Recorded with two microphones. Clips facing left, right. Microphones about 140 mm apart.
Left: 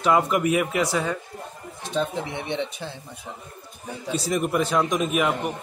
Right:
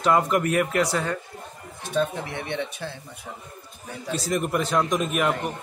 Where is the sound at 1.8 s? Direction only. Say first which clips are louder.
Right 1 dB; 20° left (ahead or behind).